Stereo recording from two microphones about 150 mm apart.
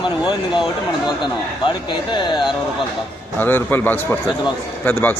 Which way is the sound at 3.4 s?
15° left (ahead or behind).